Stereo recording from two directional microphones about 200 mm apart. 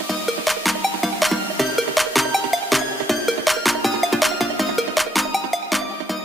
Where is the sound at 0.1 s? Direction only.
Centre (ahead or behind).